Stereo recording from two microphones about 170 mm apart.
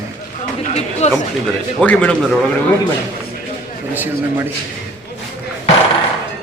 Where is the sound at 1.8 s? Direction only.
5° left (ahead or behind).